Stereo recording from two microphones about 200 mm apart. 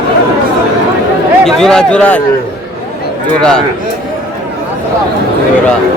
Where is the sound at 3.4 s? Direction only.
5° left (ahead or behind).